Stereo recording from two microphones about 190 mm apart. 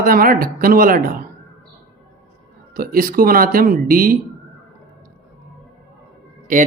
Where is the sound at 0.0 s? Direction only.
50° right (ahead or behind).